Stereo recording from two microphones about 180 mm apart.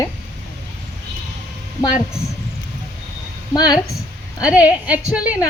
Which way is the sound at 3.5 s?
20° left (ahead or behind).